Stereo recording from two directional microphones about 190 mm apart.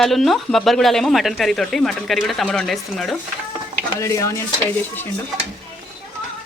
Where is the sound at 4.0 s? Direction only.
15° left (ahead or behind).